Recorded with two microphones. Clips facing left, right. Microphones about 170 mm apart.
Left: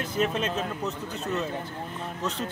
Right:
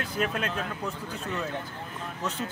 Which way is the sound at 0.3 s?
20° left (ahead or behind).